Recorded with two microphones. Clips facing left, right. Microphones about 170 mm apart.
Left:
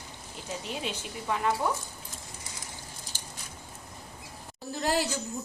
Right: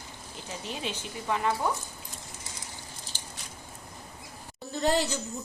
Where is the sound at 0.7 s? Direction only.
10° left (ahead or behind).